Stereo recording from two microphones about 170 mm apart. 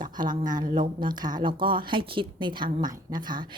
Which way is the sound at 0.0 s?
25° right (ahead or behind).